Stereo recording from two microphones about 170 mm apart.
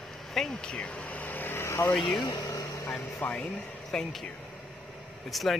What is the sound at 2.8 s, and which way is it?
Speech, 10° left (ahead or behind).